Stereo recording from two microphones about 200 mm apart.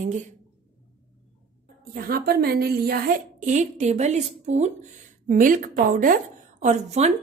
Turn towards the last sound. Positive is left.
turn(degrees=-35)  # may be behind; listen again after turning